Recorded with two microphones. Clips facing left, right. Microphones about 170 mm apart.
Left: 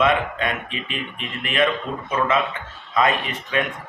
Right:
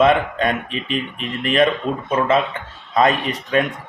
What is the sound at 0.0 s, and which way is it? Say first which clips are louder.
Speech: right 5 dB; 35° right (ahead or behind).